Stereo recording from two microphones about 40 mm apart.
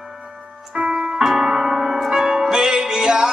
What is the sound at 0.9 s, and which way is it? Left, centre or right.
Music, centre.